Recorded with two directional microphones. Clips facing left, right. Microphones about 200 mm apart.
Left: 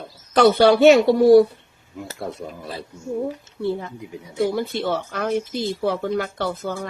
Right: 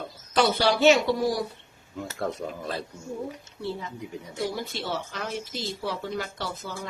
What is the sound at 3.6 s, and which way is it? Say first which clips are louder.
Speech: left 8 dB; 55° left (ahead or behind).